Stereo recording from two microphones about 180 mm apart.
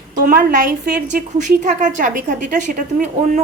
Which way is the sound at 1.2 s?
40° right (ahead or behind).